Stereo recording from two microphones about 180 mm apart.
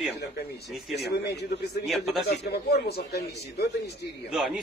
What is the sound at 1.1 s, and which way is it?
Speech, 65° left (ahead or behind).